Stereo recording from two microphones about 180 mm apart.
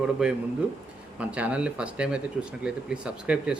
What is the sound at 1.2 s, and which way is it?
Speech, 5° right (ahead or behind).